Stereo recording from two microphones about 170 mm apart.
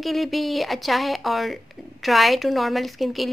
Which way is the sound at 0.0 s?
Centre (ahead or behind).